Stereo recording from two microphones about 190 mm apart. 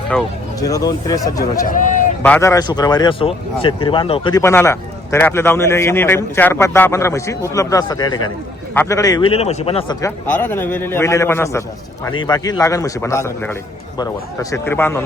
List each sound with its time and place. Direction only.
0.1 s a man's voice: 5° left (ahead or behind)
0.6 s a man's voice: 20° left (ahead or behind)
1.6 s a sound: 45° left (ahead or behind)
2.2 s a man's voice: 10° left (ahead or behind); by 10.0 s 30° left (ahead or behind)
10.0 s a man's voice: 10° left (ahead or behind)